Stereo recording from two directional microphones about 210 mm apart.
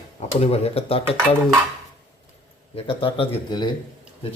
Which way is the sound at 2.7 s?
25° left (ahead or behind).